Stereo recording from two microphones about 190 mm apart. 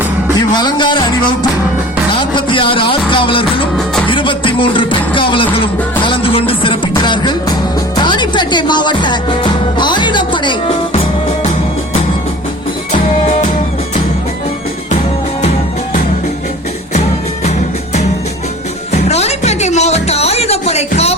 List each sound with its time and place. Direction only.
0.5 s speech: 25° left (ahead or behind)
2.1 s music: 25° left (ahead or behind)
12.9 s music: 40° left (ahead or behind)
15.4 s music: 35° left (ahead or behind)
18.9 s music: 35° left (ahead or behind)